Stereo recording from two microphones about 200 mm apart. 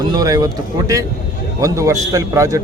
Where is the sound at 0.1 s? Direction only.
20° right (ahead or behind).